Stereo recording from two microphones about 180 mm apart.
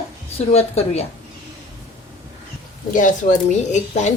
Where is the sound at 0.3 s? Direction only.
35° left (ahead or behind).